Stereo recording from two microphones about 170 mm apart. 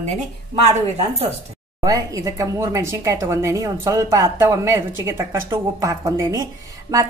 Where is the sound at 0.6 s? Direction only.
40° right (ahead or behind).